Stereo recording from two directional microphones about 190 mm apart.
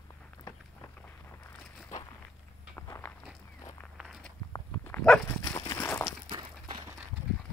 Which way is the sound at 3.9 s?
Centre (ahead or behind).